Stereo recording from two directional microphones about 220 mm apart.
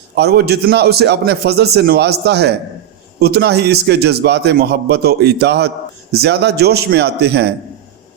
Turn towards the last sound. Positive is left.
turn(degrees=-50)  # may be behind; listen again after turning